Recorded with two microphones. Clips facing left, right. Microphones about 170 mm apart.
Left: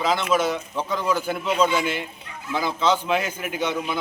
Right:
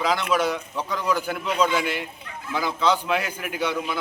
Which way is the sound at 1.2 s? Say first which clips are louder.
Left 2 dB; 10° left (ahead or behind).